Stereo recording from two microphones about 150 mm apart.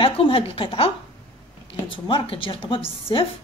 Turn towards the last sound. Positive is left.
turn(degrees=35)  # may be behind; listen again after turning